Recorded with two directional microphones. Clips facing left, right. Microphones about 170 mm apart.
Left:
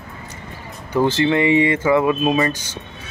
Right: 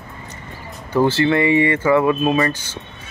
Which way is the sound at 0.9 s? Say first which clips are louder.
Right 1 dB; 15° left (ahead or behind).